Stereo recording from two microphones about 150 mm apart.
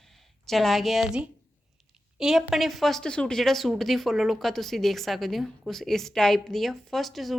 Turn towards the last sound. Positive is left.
turn(degrees=0)  # may be behind; listen again after turning